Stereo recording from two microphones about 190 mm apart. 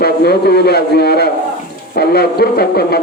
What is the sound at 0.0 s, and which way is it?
A man's voice, 55° left (ahead or behind).